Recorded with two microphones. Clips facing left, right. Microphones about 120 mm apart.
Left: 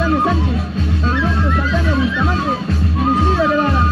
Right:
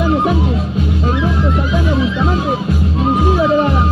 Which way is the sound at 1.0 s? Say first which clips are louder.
Right 1 dB; 15° right (ahead or behind).